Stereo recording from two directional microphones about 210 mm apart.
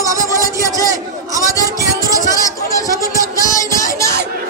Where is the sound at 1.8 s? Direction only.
15° right (ahead or behind).